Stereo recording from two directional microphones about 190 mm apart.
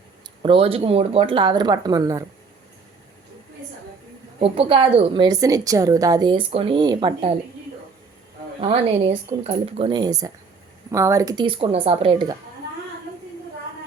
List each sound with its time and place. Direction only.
0.4 s a woman's voice: 30° right (ahead or behind)
4.4 s a woman's voice: 30° right (ahead or behind)
8.6 s a woman's voice: 30° right (ahead or behind)